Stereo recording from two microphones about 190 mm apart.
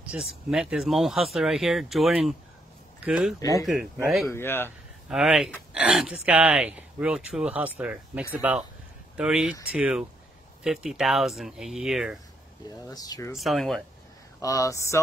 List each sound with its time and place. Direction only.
0.2 s speech: 5° right (ahead or behind)
3.3 s speech: 20° left (ahead or behind)
3.6 s speech: centre (ahead or behind)
4.3 s speech: 10° left (ahead or behind)
5.1 s speech: 5° right (ahead or behind)
12.9 s speech: 20° left (ahead or behind)
13.4 s speech: centre (ahead or behind)
14.4 s speech: 15° left (ahead or behind)